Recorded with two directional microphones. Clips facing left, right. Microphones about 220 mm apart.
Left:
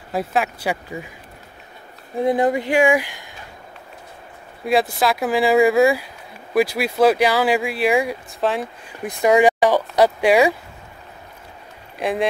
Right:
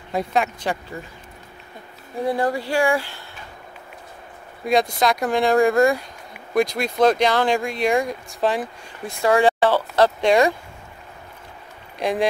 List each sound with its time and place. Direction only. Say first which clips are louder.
0.1 s speech: even; 5° left (ahead or behind)
2.2 s speech: left 4 dB; 20° left (ahead or behind)
4.6 s speech: left 1 dB; 5° left (ahead or behind)
9.0 s speech: left 3 dB; 15° left (ahead or behind)
12.0 s speech: even; centre (ahead or behind)